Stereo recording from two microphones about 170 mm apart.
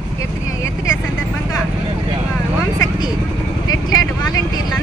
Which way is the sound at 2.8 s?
25° left (ahead or behind).